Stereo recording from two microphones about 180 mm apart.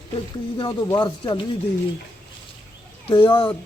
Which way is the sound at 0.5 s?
25° left (ahead or behind).